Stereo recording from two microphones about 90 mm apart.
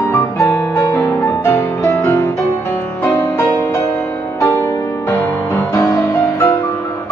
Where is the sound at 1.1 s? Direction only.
30° left (ahead or behind).